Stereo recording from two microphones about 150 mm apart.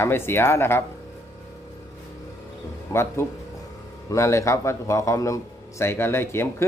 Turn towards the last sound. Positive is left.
turn(degrees=15)  # may be behind; listen again after turning